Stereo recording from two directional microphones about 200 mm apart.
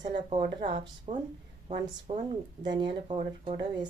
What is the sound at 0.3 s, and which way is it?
Speech, 30° right (ahead or behind).